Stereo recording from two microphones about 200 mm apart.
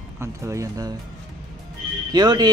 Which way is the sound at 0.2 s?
15° right (ahead or behind).